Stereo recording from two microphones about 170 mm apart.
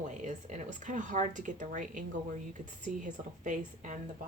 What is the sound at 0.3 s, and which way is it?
A woman's voice, 45° right (ahead or behind).